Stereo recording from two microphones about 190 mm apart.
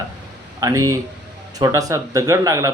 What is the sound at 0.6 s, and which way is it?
Speech, 15° right (ahead or behind).